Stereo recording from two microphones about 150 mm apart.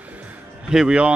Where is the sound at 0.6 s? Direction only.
5° right (ahead or behind).